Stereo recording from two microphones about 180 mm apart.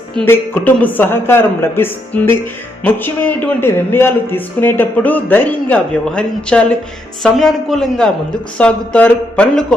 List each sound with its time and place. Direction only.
0.3 s speech: 10° left (ahead or behind)